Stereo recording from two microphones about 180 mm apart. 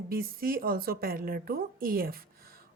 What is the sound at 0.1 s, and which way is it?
A woman's voice, 55° right (ahead or behind).